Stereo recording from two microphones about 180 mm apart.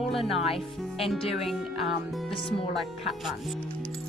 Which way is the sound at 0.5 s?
30° left (ahead or behind).